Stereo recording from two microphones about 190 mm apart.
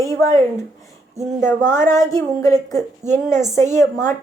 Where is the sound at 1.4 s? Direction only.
10° left (ahead or behind).